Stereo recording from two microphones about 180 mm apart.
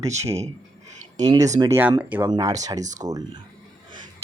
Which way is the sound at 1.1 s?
20° right (ahead or behind).